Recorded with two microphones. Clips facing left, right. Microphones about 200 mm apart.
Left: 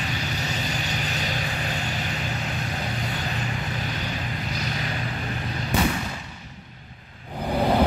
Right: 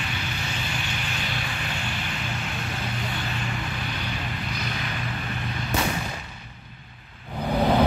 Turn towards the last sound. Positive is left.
turn(degrees=5)  # may be behind; listen again after turning